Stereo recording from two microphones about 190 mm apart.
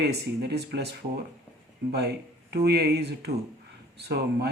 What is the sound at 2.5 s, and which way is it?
Speech, 60° right (ahead or behind).